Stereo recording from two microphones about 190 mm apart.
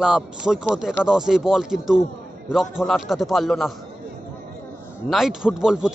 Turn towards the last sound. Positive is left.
turn(degrees=-5)  # may be behind; listen again after turning